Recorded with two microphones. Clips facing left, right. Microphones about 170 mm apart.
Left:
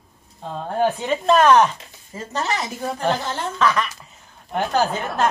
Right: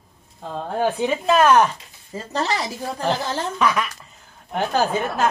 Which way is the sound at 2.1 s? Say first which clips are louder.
Right 1 dB; 35° right (ahead or behind).